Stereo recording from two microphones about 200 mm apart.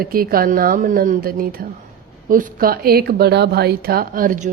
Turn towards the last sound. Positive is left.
turn(degrees=-40)  # may be behind; listen again after turning